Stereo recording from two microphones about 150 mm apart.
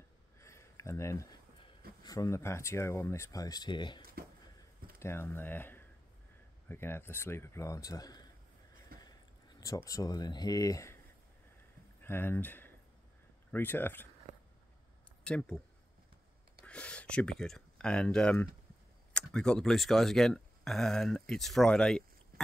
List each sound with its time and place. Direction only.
0.4 s a sound: 20° left (ahead or behind)
2.0 s speech: 20° left (ahead or behind)
4.0 s speech: 80° right
4.9 s a man's voice: 15° left (ahead or behind)
12.0 s a man's voice: 15° left (ahead or behind)
15.2 s speech: 5° left (ahead or behind)
16.6 s speech: 5° left (ahead or behind)